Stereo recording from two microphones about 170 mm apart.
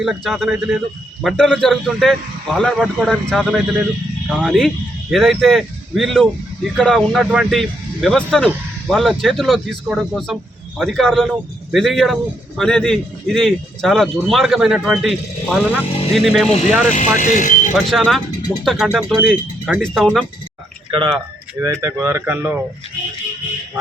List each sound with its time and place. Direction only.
0.0 s speech: centre (ahead or behind)
16.9 s speech: 50° left (ahead or behind)
17.7 s speech: centre (ahead or behind)
20.9 s speech: 30° right (ahead or behind); by 22.5 s 10° right (ahead or behind)